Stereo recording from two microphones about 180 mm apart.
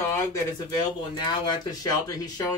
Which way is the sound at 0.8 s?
25° left (ahead or behind).